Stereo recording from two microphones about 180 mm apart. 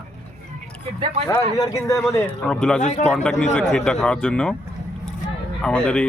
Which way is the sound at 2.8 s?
45° left (ahead or behind).